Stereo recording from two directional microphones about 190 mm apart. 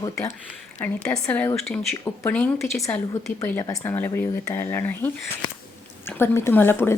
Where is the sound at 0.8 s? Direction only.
5° left (ahead or behind).